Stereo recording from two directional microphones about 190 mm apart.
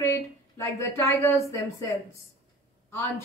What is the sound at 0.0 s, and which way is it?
A woman's voice, 15° left (ahead or behind).